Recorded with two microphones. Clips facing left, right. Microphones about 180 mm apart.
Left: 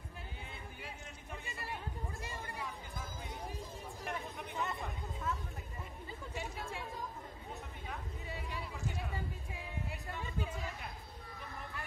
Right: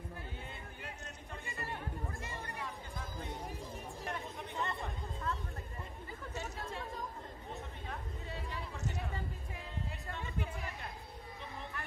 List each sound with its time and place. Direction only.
1.4 s chatter: 20° left (ahead or behind)
4.0 s chatter: centre (ahead or behind)
6.3 s chatter: 15° left (ahead or behind)